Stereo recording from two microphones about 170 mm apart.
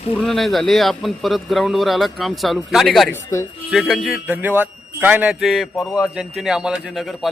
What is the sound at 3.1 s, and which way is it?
Speech, 15° left (ahead or behind).